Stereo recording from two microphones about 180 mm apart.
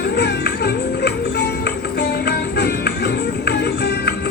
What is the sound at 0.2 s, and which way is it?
Music, 65° left (ahead or behind).